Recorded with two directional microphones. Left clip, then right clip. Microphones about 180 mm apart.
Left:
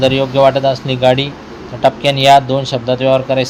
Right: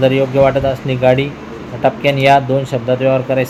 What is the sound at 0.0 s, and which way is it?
Speech, 25° left (ahead or behind).